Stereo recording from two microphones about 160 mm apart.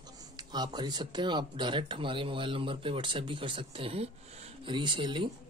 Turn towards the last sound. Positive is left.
turn(degrees=-30)  # may be behind; listen again after turning